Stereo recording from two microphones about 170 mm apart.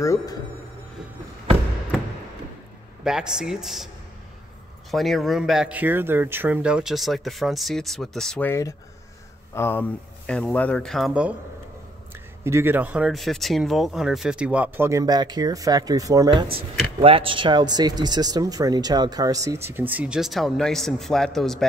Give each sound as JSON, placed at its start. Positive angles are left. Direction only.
{"t": 0.0, "sound": "speech", "side_deg": 15}
{"t": 3.0, "sound": "speech", "side_deg": -5}
{"t": 4.9, "sound": "speech", "side_deg": 0}
{"t": 12.4, "sound": "speech", "side_deg": -15}